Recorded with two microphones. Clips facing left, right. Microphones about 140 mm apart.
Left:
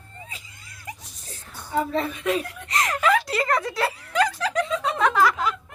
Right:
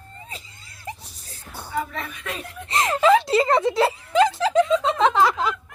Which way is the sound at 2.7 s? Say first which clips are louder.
Right 5 dB; 30° right (ahead or behind).